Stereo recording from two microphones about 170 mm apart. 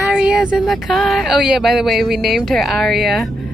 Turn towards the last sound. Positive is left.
turn(degrees=0)  # may be behind; listen again after turning